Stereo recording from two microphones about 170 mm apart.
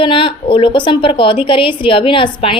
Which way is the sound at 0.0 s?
30° left (ahead or behind).